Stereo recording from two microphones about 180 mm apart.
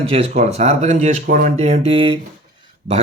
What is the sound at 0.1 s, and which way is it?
Speech, 35° right (ahead or behind).